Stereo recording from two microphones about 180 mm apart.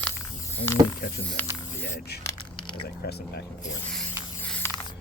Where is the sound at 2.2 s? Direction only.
25° left (ahead or behind).